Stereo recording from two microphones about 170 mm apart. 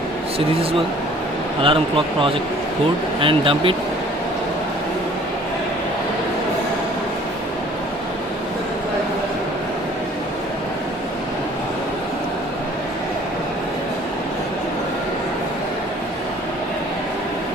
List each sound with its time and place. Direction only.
1.6 s speech: 30° right (ahead or behind)